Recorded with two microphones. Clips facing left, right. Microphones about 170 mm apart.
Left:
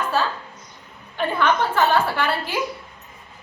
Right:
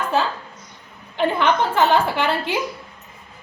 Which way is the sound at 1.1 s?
20° right (ahead or behind).